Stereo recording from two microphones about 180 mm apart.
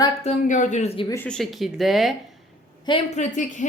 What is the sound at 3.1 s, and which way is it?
Speech, 45° left (ahead or behind).